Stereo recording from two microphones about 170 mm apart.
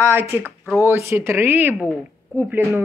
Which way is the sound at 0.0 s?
15° right (ahead or behind).